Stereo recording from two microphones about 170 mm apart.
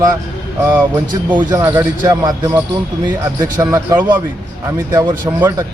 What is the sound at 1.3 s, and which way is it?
Speech, 15° right (ahead or behind).